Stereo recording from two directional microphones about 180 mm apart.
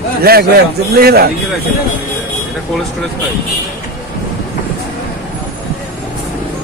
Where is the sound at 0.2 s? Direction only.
60° right (ahead or behind).